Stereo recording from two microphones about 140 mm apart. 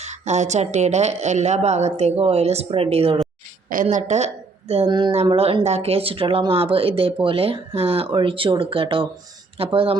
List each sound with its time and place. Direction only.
0.0 s a woman's voice: 55° right (ahead or behind)
3.7 s a woman's voice: 70° right (ahead or behind); by 4.3 s 55° right (ahead or behind)
4.9 s speech: 35° right (ahead or behind)